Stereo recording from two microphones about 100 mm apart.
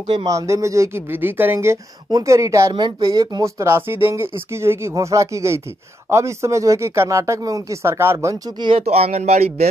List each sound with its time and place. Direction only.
0.2 s speech: 35° right (ahead or behind)
8.7 s speech: 85° right